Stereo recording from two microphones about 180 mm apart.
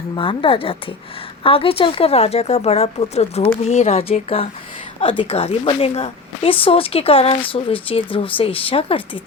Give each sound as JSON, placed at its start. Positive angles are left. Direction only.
{"t": 0.2, "sound": "a woman's voice", "side_deg": 30}